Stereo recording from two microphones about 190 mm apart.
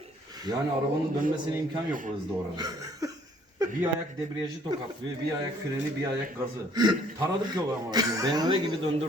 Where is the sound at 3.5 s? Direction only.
20° right (ahead or behind).